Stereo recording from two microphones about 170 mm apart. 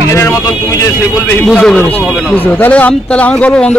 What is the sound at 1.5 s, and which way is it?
A man's voice, 5° left (ahead or behind).